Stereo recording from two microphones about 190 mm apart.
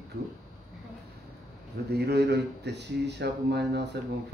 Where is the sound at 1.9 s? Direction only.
60° right (ahead or behind).